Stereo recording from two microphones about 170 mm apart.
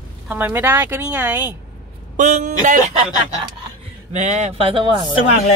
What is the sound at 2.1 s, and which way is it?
Speech, 45° right (ahead or behind).